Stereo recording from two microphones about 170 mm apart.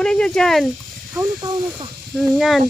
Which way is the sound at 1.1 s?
25° right (ahead or behind).